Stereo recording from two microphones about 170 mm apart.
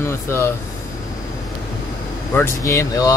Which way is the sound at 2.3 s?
15° left (ahead or behind).